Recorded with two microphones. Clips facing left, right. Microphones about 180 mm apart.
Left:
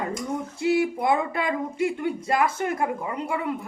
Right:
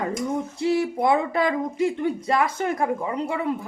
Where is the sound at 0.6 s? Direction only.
35° right (ahead or behind).